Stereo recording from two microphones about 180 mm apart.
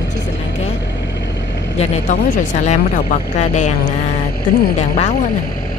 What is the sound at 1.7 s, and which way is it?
Vehicle, 40° left (ahead or behind).